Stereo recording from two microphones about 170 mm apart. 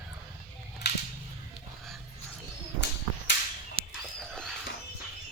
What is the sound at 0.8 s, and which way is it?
Whip, 80° left.